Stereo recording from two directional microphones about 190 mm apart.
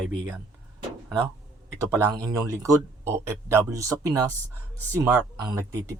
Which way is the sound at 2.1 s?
20° right (ahead or behind).